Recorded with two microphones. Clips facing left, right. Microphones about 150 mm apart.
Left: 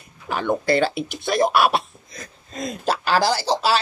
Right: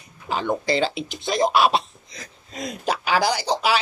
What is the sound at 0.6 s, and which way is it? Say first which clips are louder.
Speech: left 3 dB; 55° left (ahead or behind).